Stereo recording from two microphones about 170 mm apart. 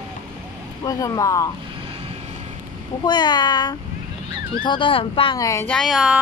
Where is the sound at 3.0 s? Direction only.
25° left (ahead or behind).